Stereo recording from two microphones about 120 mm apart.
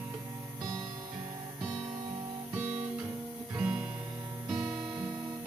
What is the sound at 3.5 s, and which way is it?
Music, 10° right (ahead or behind).